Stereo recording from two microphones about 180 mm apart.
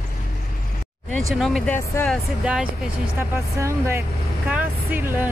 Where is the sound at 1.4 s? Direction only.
Centre (ahead or behind).